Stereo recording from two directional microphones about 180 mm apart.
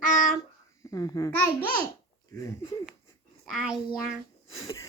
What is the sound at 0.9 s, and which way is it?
Speech, 20° left (ahead or behind).